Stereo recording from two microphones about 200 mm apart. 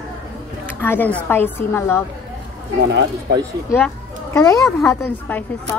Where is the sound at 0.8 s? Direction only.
10° left (ahead or behind).